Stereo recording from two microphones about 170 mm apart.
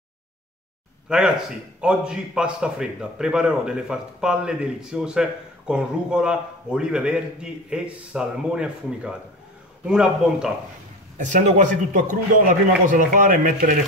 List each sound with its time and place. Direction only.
1.0 s a man's voice: 5° right (ahead or behind)
11.1 s a man's voice: 45° right (ahead or behind)